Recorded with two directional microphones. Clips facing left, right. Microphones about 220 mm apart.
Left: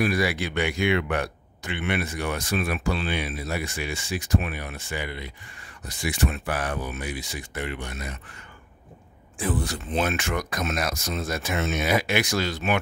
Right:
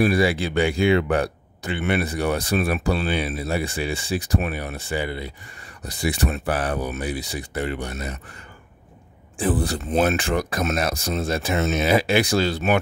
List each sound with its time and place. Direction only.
0.0 s speech: 30° right (ahead or behind)
9.4 s speech: 35° right (ahead or behind)